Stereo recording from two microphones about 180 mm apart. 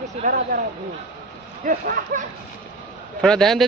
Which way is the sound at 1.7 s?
50° right (ahead or behind).